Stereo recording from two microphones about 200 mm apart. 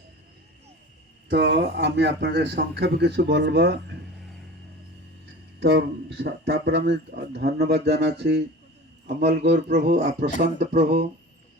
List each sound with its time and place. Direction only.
1.3 s speech: 60° right (ahead or behind)
5.5 s speech: 60° right (ahead or behind)
9.9 s speech: 40° right (ahead or behind)